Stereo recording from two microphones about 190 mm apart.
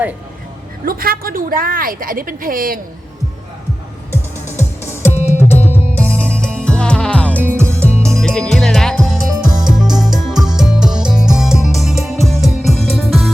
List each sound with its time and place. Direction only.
0.9 s a woman's voice: 50° right (ahead or behind)
4.8 s music: 15° left (ahead or behind)
7.4 s music: 10° right (ahead or behind)
8.2 s music: 5° left (ahead or behind)
9.3 s music: 20° right (ahead or behind)
9.6 s music: centre (ahead or behind)